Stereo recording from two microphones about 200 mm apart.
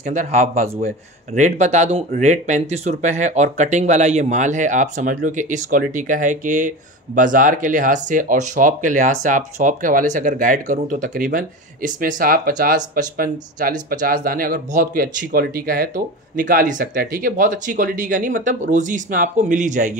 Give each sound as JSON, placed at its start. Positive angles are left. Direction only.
{"t": 0.0, "sound": "speech", "side_deg": -35}